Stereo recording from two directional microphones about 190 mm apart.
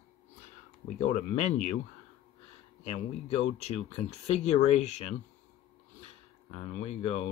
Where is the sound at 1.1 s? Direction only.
40° left (ahead or behind).